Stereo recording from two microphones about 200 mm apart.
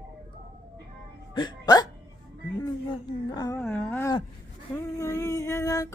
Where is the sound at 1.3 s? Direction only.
20° left (ahead or behind).